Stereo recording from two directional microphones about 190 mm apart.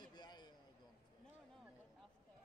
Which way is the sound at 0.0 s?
20° left (ahead or behind).